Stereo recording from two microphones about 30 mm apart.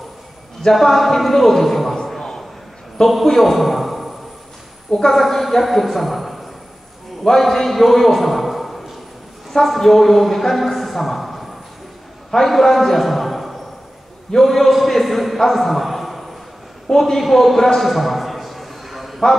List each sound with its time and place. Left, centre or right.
0.7 s a man's voice: centre
2.1 s a sound: centre
3.3 s speech: centre
5.1 s a man's voice: centre
12.4 s a man's voice: centre
16.9 s a sound: centre